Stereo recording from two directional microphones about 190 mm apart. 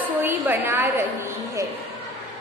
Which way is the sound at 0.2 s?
10° right (ahead or behind).